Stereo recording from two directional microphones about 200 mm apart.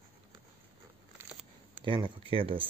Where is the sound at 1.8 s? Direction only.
25° right (ahead or behind).